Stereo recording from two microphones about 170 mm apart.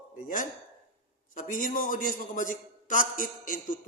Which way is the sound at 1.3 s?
55° left (ahead or behind).